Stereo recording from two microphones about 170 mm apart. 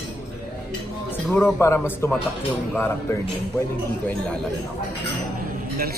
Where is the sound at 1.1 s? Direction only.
10° left (ahead or behind).